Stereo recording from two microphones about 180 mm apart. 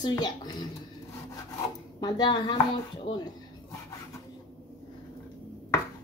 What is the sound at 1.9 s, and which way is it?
Speech, 25° left (ahead or behind).